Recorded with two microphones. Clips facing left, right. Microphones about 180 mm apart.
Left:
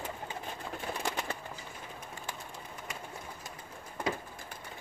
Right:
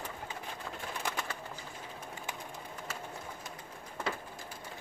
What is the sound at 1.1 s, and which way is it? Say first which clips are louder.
Bird: left 2 dB; 20° left (ahead or behind).